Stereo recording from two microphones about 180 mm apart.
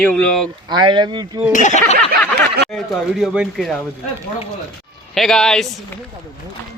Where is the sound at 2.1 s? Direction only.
65° right (ahead or behind).